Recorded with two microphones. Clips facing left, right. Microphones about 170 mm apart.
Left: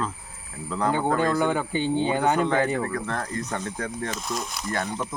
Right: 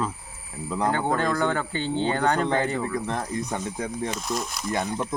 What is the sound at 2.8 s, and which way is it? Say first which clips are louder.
Speech: right 1 dB; 15° right (ahead or behind).